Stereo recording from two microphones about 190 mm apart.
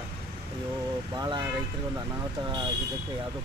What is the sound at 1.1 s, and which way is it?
Vehicle, 25° right (ahead or behind).